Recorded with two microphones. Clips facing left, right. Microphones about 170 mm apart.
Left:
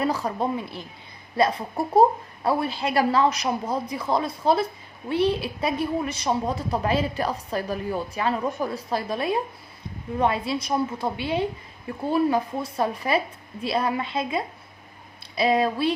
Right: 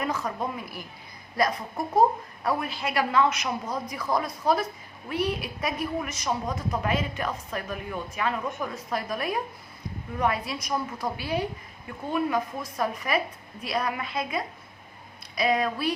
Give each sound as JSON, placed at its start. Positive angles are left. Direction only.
{"t": 0.0, "sound": "a woman's voice", "side_deg": 30}